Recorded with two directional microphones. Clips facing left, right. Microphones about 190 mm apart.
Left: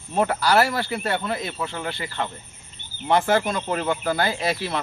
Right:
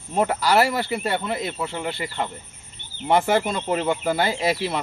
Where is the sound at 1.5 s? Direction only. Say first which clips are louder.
Right 2 dB; 10° right (ahead or behind).